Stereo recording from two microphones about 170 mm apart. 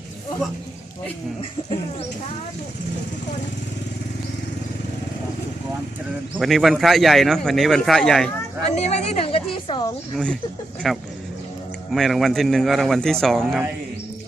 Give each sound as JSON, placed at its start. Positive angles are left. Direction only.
{"t": 6.4, "sound": "speech", "side_deg": 0}
{"t": 8.7, "sound": "a woman's voice", "side_deg": 40}
{"t": 10.8, "sound": "speech", "side_deg": 0}